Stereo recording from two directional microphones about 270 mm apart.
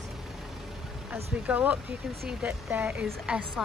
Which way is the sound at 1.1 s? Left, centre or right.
Centre.